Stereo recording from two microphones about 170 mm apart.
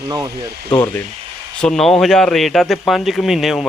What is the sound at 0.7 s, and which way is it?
Speech, 10° left (ahead or behind).